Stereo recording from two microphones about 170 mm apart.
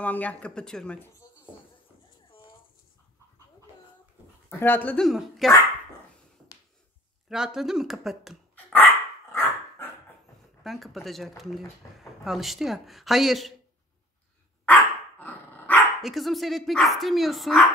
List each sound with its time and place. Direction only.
0.0 s speech: 10° left (ahead or behind)
4.6 s speech: 10° left (ahead or behind)
7.2 s speech: 5° right (ahead or behind)
8.7 s dog: 15° left (ahead or behind)
10.6 s speech: centre (ahead or behind)
11.8 s speech: 15° left (ahead or behind)
12.3 s speech: centre (ahead or behind)
14.7 s dog: 10° left (ahead or behind)
16.0 s speech: centre (ahead or behind)